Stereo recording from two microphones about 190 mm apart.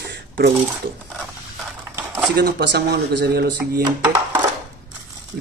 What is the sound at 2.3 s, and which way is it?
Speech, 55° right (ahead or behind).